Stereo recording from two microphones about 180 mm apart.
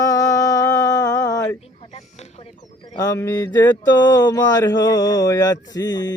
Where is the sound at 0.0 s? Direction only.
20° left (ahead or behind).